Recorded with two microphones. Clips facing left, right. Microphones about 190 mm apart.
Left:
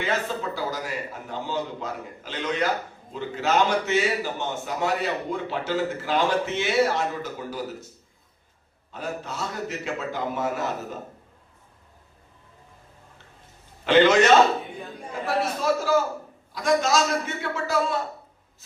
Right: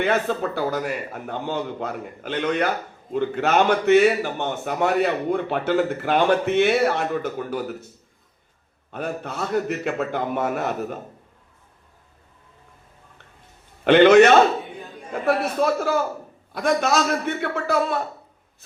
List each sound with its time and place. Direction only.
0.0 s a man's voice: 60° right (ahead or behind)
8.9 s a man's voice: 60° right (ahead or behind)
13.8 s a man's voice: 60° right (ahead or behind)